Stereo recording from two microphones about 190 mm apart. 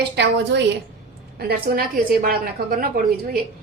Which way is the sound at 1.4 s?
55° right (ahead or behind).